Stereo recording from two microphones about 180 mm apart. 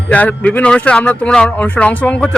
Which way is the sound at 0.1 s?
10° left (ahead or behind).